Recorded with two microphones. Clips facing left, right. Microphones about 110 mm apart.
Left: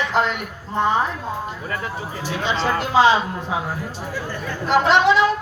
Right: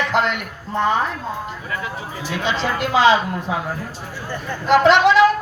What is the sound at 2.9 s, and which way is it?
Speech, 70° right (ahead or behind).